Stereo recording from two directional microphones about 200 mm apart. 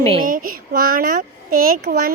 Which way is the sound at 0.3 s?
45° right (ahead or behind).